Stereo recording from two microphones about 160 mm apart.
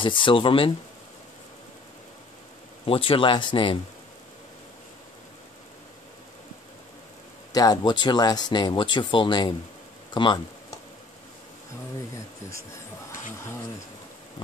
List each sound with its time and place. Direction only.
0.0 s speech: 30° left (ahead or behind)
2.8 s speech: 35° left (ahead or behind)
7.5 s speech: 25° left (ahead or behind)